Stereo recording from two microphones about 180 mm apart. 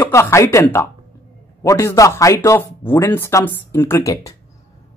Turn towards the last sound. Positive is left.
turn(degrees=15)  # may be behind; listen again after turning